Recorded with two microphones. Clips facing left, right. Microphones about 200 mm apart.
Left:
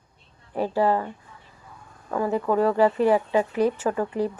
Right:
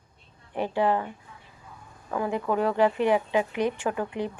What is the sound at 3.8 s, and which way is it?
Speech, centre (ahead or behind).